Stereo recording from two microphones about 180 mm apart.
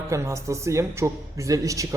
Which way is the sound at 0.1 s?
15° right (ahead or behind).